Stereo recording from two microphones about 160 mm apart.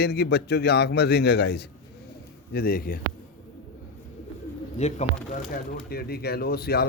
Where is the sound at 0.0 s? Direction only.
90° left.